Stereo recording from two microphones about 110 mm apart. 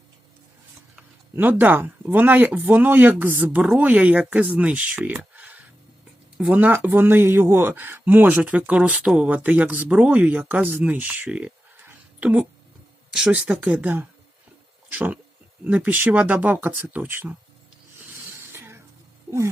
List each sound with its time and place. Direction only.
1.4 s speech: 15° right (ahead or behind)
11.9 s a sound: 15° right (ahead or behind)
13.1 s speech: 5° right (ahead or behind)
18.5 s music: 20° right (ahead or behind)